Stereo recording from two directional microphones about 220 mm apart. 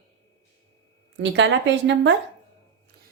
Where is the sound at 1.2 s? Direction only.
55° right (ahead or behind).